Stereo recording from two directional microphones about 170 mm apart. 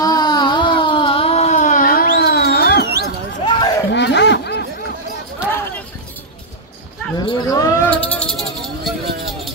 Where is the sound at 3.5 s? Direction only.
25° left (ahead or behind).